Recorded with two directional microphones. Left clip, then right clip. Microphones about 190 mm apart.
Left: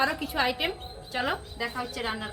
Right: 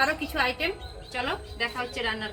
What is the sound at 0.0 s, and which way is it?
A woman's voice, 5° right (ahead or behind).